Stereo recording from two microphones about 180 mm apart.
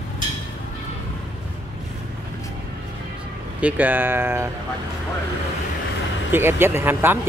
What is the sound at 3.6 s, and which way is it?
Speech, 10° right (ahead or behind).